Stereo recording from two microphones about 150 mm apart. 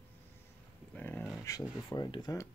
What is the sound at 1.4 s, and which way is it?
Speech, 25° left (ahead or behind).